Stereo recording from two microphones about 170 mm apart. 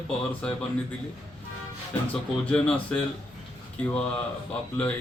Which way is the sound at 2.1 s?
5° left (ahead or behind).